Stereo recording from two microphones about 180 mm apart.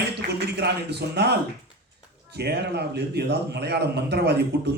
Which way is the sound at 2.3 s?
65° right (ahead or behind).